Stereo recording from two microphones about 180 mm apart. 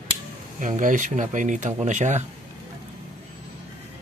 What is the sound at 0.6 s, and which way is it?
Speech, 45° right (ahead or behind).